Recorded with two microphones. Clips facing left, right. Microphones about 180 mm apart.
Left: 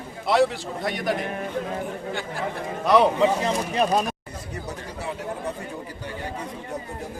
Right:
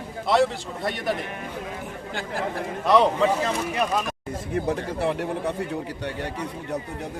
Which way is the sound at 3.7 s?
35° left (ahead or behind).